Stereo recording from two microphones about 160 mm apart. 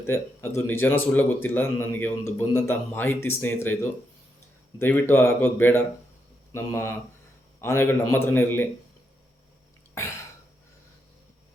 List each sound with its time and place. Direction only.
0.0 s speech: 15° left (ahead or behind)
4.8 s speech: 15° left (ahead or behind)